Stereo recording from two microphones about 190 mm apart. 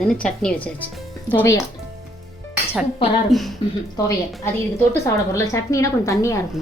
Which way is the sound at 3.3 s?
Centre (ahead or behind).